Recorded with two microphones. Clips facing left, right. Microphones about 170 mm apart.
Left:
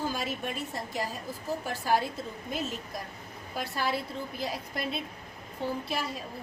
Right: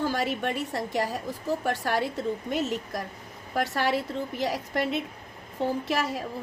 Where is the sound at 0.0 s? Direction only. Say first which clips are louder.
Right 5 dB; 75° right (ahead or behind).